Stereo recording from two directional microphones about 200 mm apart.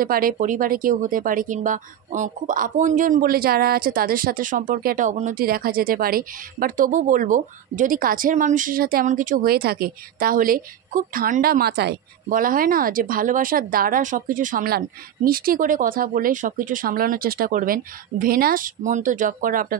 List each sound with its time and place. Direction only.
0.0 s speech: 45° right (ahead or behind)